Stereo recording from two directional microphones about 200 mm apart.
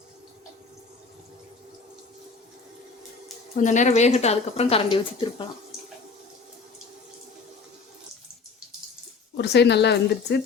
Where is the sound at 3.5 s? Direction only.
40° left (ahead or behind).